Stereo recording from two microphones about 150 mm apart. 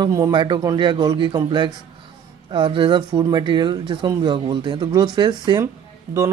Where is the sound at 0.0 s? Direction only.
25° right (ahead or behind).